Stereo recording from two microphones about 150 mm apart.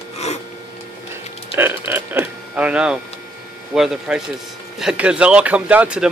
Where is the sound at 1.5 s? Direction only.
15° right (ahead or behind).